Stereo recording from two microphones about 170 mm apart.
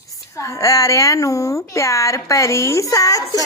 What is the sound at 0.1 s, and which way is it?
Speech, 20° left (ahead or behind).